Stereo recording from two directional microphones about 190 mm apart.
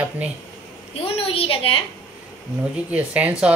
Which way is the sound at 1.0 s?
30° left (ahead or behind).